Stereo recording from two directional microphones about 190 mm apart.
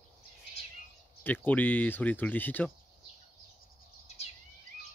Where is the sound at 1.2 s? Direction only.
10° left (ahead or behind).